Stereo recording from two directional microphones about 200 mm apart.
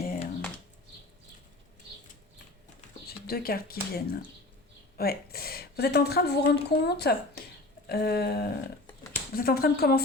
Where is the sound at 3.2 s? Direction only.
50° left (ahead or behind).